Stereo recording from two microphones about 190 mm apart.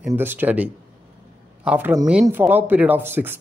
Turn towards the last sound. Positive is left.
turn(degrees=-10)  # may be behind; listen again after turning